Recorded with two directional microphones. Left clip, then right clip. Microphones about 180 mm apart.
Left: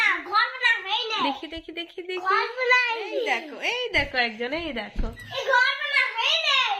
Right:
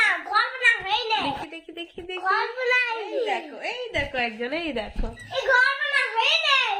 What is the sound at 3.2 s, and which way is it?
A woman's voice, 25° left (ahead or behind).